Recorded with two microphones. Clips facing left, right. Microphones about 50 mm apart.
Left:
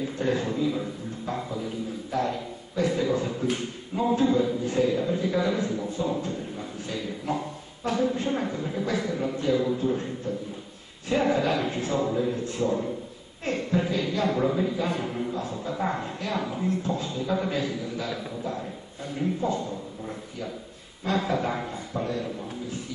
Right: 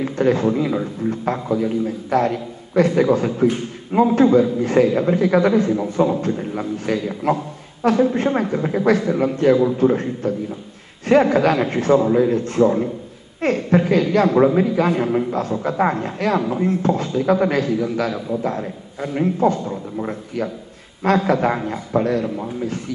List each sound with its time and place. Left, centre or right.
0.0 s a man's voice: right
5.5 s a man's voice: right
7.9 s a woman's voice: right
8.2 s a man's voice: right
16.3 s a man's voice: right